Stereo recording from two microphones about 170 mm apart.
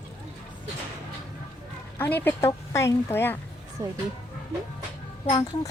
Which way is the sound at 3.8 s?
15° right (ahead or behind).